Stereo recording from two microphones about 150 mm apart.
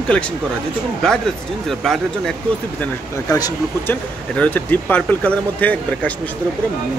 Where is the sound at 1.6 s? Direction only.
Centre (ahead or behind).